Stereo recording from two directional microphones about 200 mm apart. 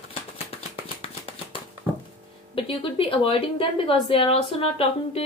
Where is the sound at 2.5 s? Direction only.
25° left (ahead or behind).